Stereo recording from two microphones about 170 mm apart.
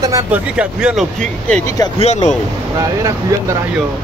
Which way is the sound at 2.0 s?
45° left (ahead or behind).